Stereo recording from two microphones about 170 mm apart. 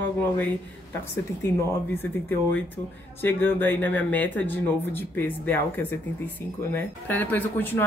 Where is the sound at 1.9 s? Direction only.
10° left (ahead or behind).